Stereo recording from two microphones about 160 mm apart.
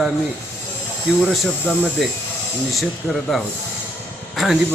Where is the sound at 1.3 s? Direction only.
Centre (ahead or behind).